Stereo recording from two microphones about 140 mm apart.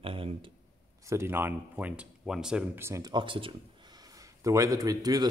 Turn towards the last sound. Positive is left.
turn(degrees=-25)  # may be behind; listen again after turning